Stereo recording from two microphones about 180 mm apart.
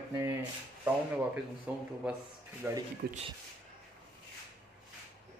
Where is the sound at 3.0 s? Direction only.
65° right (ahead or behind).